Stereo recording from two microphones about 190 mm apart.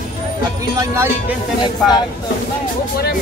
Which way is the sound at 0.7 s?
15° right (ahead or behind).